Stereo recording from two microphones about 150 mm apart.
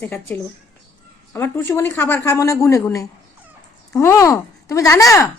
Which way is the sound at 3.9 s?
20° left (ahead or behind).